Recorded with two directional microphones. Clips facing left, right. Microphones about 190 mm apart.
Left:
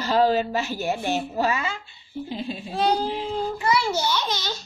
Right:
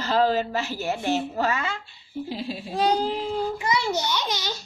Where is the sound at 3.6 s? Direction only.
15° right (ahead or behind).